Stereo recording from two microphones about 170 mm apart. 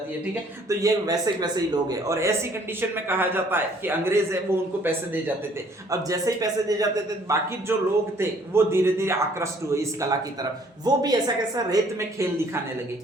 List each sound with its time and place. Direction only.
0.7 s a man's voice: 20° right (ahead or behind)